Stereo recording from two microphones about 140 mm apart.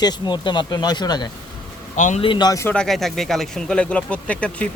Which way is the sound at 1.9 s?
65° left (ahead or behind).